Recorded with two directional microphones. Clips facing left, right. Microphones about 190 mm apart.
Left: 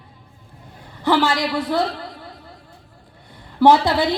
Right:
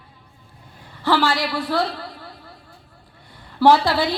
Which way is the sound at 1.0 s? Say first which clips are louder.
Left 2 dB; 20° left (ahead or behind).